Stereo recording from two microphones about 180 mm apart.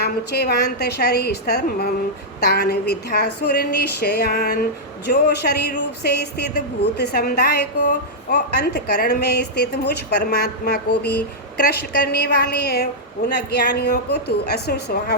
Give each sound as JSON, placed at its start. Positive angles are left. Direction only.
{"t": 0.0, "sound": "a woman's voice", "side_deg": 65}